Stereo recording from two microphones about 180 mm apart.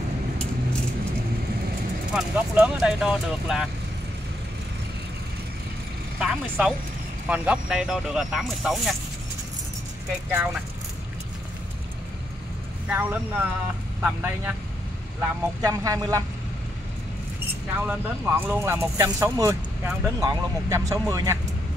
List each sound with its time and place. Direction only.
2.1 s speech: 5° right (ahead or behind)
6.1 s speech: 5° right (ahead or behind)
10.3 s speech: 10° right (ahead or behind)
12.9 s speech: 10° right (ahead or behind)
17.8 s speech: 10° right (ahead or behind)